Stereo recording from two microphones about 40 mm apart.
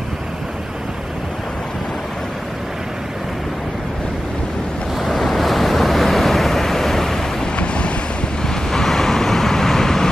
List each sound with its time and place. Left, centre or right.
5.0 s waves: centre
7.5 s waves: left
8.7 s vehicle: centre